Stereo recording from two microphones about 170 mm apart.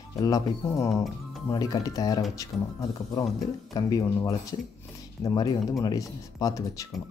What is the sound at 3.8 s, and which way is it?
Speech, 20° left (ahead or behind).